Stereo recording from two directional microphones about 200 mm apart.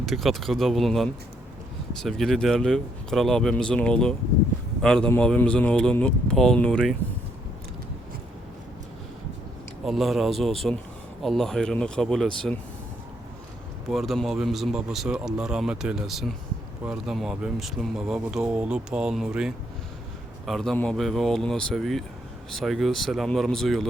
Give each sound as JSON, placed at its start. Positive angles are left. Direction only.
{"t": 0.0, "sound": "speech", "side_deg": 0}
{"t": 9.8, "sound": "speech", "side_deg": 0}
{"t": 13.9, "sound": "speech", "side_deg": 0}